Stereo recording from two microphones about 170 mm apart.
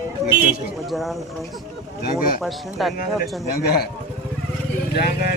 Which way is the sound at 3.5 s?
70° left (ahead or behind).